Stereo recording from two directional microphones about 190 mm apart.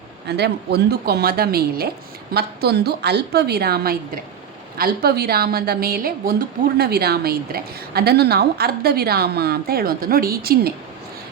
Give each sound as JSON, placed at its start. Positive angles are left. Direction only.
{"t": 0.3, "sound": "a woman's voice", "side_deg": -60}